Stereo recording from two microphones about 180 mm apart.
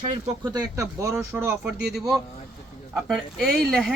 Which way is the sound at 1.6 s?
Centre (ahead or behind).